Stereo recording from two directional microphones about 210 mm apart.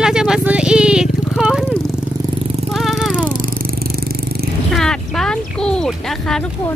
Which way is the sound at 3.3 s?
40° right (ahead or behind).